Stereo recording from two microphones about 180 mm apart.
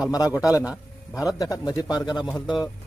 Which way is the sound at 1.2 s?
20° left (ahead or behind).